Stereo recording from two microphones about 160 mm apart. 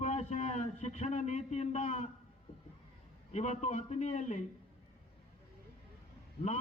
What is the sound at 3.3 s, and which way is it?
A man's voice, 45° left (ahead or behind).